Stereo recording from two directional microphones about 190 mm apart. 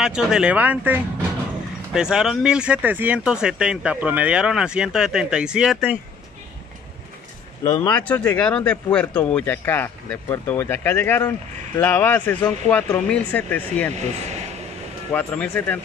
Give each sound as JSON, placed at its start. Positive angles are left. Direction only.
{"t": 0.0, "sound": "speech", "side_deg": -5}
{"t": 7.6, "sound": "speech", "side_deg": 30}
{"t": 7.9, "sound": "speech", "side_deg": 5}
{"t": 13.9, "sound": "speech", "side_deg": -35}
{"t": 15.1, "sound": "speech", "side_deg": 5}